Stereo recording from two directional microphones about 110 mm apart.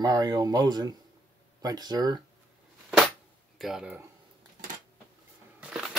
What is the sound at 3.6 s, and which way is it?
Speech, 5° right (ahead or behind).